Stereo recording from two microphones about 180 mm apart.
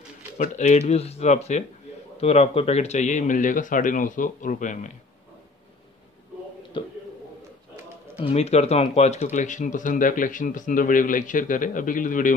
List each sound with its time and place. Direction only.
0.4 s speech: 40° left (ahead or behind)
8.2 s speech: 35° left (ahead or behind)